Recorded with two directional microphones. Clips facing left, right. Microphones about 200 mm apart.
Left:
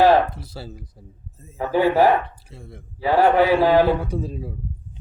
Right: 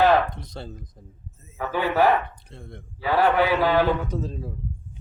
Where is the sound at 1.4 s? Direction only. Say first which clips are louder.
Left 7 dB; 35° left (ahead or behind).